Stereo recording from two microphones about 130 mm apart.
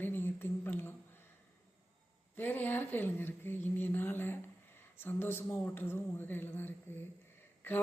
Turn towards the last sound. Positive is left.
turn(degrees=15)  # may be behind; listen again after turning